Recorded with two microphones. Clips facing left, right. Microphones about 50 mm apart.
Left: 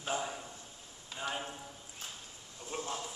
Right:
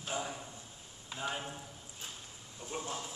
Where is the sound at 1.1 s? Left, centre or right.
Centre.